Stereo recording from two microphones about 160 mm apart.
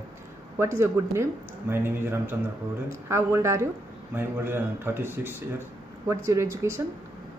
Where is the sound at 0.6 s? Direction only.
15° right (ahead or behind).